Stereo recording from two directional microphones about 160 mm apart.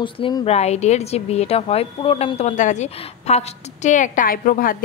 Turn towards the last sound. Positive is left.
turn(degrees=60)  # may be behind; listen again after turning